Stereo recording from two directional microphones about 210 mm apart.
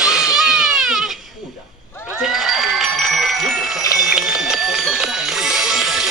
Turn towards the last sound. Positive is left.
turn(degrees=0)  # may be behind; listen again after turning